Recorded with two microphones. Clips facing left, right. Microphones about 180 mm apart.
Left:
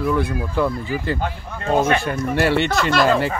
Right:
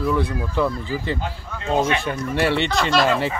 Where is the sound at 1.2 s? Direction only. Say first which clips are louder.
Left 3 dB; 55° left (ahead or behind).